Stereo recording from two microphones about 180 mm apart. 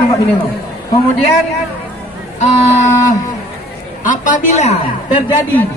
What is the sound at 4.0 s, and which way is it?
Speech, 45° left (ahead or behind).